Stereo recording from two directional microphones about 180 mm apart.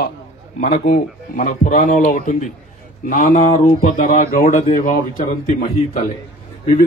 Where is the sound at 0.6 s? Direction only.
45° left (ahead or behind).